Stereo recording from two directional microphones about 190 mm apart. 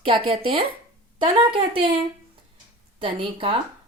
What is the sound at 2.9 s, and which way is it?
Speech, 25° right (ahead or behind).